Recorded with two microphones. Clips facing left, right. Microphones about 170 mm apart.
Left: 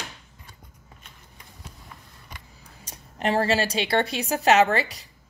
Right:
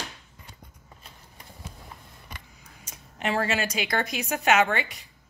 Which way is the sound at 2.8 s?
35° left (ahead or behind).